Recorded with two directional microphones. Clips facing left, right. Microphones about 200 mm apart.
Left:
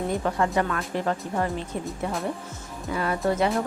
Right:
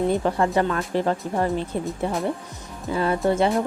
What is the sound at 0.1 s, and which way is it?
Speech, 30° right (ahead or behind).